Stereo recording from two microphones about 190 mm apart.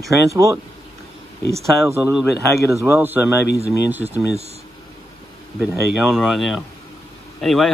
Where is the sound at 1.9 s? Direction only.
15° right (ahead or behind).